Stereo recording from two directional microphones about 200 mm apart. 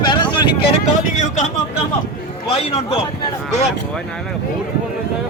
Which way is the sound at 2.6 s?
30° left (ahead or behind).